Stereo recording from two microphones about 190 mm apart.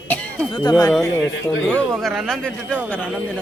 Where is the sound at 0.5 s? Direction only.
25° left (ahead or behind).